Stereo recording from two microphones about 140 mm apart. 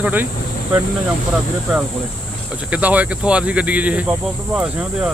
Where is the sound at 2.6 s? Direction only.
10° right (ahead or behind).